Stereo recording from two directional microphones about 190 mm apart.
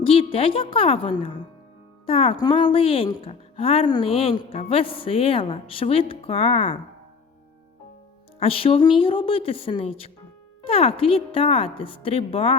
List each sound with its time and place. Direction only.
0.0 s a woman's voice: 30° left (ahead or behind)
8.4 s a woman's voice: 30° left (ahead or behind)